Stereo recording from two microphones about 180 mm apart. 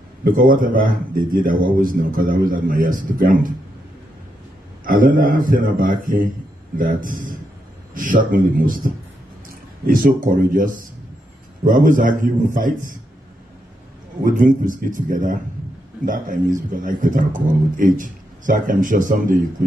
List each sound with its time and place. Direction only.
0.2 s speech: 50° right (ahead or behind)
4.8 s speech: 50° right (ahead or behind)
14.2 s speech: 50° right (ahead or behind)